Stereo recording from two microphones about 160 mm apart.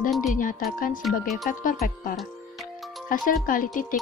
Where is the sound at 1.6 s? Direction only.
60° left (ahead or behind).